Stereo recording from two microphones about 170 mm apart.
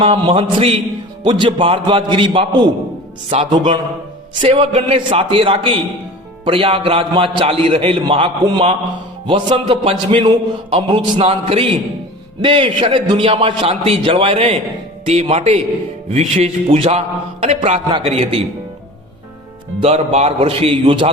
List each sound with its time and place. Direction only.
0.0 s a man's voice: 30° right (ahead or behind)
19.8 s a man's voice: 40° right (ahead or behind)